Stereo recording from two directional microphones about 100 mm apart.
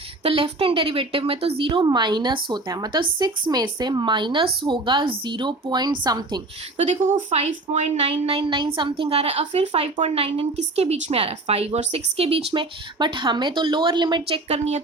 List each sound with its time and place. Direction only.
0.2 s a woman's voice: 75° right (ahead or behind); by 6.4 s 45° right (ahead or behind)
7.3 s a woman's voice: 90° right
13.0 s a woman's voice: 50° right (ahead or behind)
14.3 s a woman's voice: 80° right